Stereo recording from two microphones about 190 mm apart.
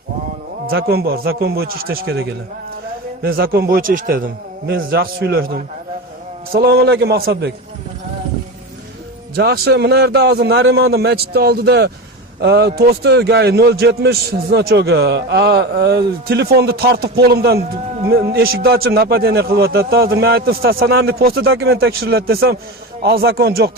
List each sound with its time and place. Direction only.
0.7 s a man's voice: 55° right (ahead or behind)
3.2 s a man's voice: 50° right (ahead or behind)
9.3 s a man's voice: 55° right (ahead or behind)